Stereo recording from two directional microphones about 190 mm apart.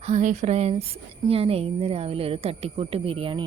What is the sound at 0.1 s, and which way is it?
Speech, 40° right (ahead or behind).